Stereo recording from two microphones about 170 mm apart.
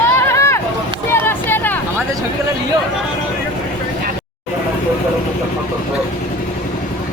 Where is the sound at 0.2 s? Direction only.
15° left (ahead or behind).